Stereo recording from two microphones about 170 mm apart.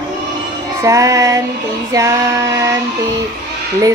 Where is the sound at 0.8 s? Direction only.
20° right (ahead or behind).